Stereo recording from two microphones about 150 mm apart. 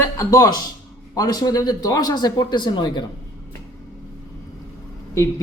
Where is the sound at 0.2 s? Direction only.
25° left (ahead or behind).